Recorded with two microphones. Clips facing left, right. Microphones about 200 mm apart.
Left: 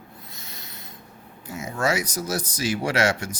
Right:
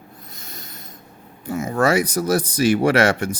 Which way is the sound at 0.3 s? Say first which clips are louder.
Right 3 dB; 50° right (ahead or behind).